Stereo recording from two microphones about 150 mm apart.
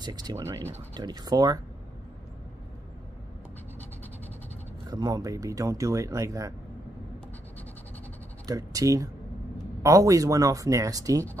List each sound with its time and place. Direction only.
0.0 s speech: 25° right (ahead or behind)
4.8 s speech: 25° right (ahead or behind)
8.5 s speech: 25° right (ahead or behind)